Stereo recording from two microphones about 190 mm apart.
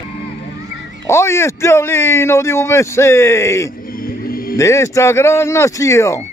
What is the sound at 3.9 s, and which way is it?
Music, 50° left (ahead or behind).